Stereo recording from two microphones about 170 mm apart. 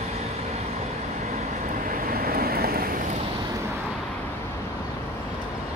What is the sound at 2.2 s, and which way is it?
Vehicle, 60° right (ahead or behind).